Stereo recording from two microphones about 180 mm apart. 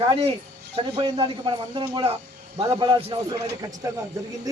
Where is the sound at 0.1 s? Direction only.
35° right (ahead or behind).